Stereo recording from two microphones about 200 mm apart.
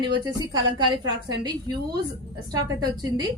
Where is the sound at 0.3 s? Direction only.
20° right (ahead or behind).